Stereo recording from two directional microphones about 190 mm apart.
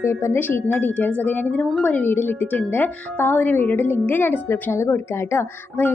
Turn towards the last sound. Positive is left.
turn(degrees=15)  # may be behind; listen again after turning